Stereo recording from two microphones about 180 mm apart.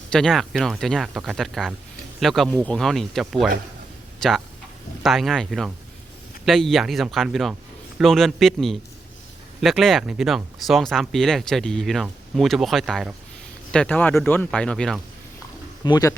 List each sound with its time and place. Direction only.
0.1 s speech: 5° left (ahead or behind)
15.8 s speech: 20° left (ahead or behind)